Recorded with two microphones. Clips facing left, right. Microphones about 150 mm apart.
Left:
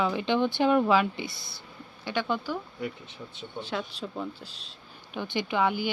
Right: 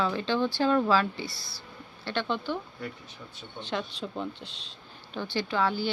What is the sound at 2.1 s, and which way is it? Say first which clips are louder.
Speech: left 1 dB; 10° left (ahead or behind).